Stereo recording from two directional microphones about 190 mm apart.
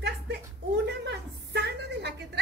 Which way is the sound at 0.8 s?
60° right (ahead or behind).